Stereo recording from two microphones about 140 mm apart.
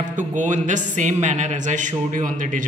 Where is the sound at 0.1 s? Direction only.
60° right (ahead or behind).